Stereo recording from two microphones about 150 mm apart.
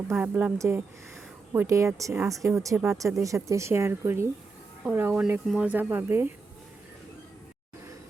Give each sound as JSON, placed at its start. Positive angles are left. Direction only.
{"t": 0.1, "sound": "speech", "side_deg": -10}